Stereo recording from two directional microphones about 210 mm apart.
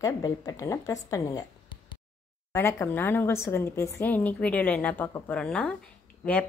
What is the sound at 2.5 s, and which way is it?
A woman's voice, 15° left (ahead or behind).